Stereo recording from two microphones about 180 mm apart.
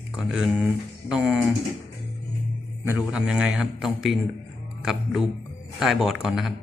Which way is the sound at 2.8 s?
5° right (ahead or behind).